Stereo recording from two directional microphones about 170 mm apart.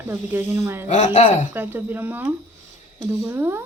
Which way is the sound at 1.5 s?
10° right (ahead or behind).